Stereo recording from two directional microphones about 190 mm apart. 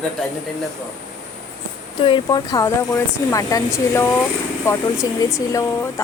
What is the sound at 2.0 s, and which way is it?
Speech, 25° left (ahead or behind).